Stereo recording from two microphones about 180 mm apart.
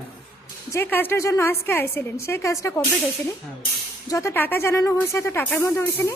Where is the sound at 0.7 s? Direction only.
10° left (ahead or behind).